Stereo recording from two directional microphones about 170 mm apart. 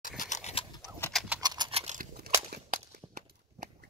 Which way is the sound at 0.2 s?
45° left (ahead or behind).